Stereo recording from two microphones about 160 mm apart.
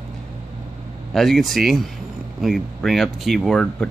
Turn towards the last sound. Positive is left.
turn(degrees=5)  # may be behind; listen again after turning